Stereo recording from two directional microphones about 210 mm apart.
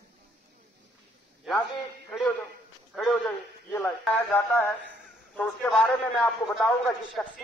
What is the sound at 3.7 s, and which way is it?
A man's voice, 10° left (ahead or behind).